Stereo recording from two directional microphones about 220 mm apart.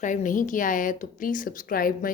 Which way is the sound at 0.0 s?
35° left (ahead or behind).